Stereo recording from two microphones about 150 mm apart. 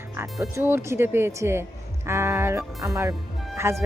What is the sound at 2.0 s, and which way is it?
Music, 15° right (ahead or behind).